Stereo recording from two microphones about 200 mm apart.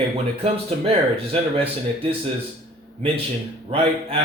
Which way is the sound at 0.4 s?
30° right (ahead or behind).